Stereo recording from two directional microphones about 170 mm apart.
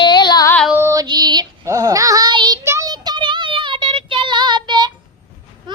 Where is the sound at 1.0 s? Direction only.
25° right (ahead or behind).